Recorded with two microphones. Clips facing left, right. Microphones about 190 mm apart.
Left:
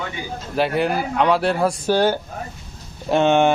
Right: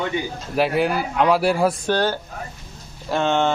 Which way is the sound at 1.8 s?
10° left (ahead or behind).